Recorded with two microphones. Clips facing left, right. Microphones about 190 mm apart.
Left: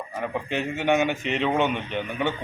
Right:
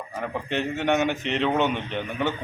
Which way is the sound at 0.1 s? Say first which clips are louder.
Even; 5° left (ahead or behind).